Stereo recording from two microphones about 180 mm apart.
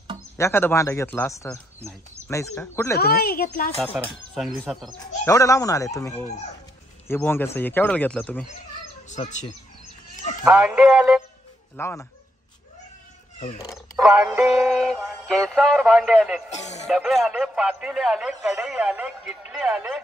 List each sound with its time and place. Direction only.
0.4 s speech: 15° left (ahead or behind)
3.0 s a child's voice: 60° left (ahead or behind)
3.9 s speech: centre (ahead or behind)
5.2 s speech: 15° left (ahead or behind)
9.1 s speech: 40° left (ahead or behind)
10.4 s speech: 5° right (ahead or behind)
11.7 s speech: 15° left (ahead or behind)
13.9 s speech: centre (ahead or behind)
16.4 s speech: 40° left (ahead or behind)
16.8 s speech: centre (ahead or behind)